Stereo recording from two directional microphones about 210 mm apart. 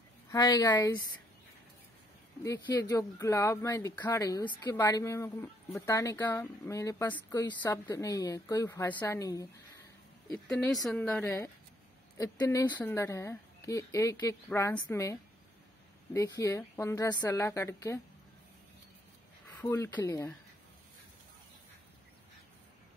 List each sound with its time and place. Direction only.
0.3 s speech: 15° left (ahead or behind)
2.4 s speech: 15° left (ahead or behind)
10.3 s speech: centre (ahead or behind)
19.6 s speech: 10° left (ahead or behind)